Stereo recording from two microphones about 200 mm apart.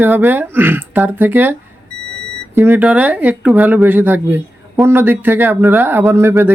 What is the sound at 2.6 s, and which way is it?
Speech, 10° right (ahead or behind).